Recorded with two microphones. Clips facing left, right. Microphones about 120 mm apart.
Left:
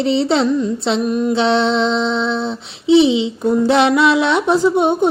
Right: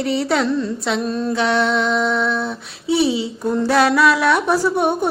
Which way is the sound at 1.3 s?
25° left (ahead or behind).